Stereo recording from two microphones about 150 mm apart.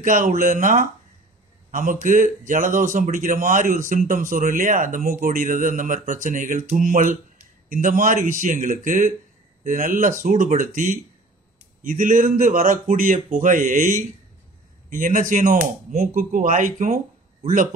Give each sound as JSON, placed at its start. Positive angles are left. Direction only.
{"t": 0.0, "sound": "a man's voice", "side_deg": -65}